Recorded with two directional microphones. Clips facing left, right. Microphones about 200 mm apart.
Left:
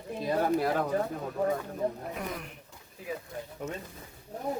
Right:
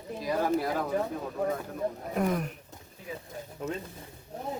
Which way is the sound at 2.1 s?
50° right (ahead or behind).